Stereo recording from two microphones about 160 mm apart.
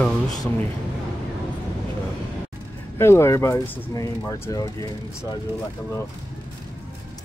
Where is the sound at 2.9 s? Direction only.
15° left (ahead or behind).